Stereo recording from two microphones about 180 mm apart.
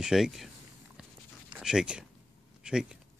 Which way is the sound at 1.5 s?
5° right (ahead or behind).